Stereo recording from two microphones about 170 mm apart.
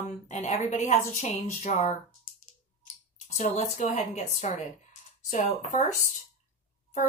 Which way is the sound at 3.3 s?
40° left (ahead or behind).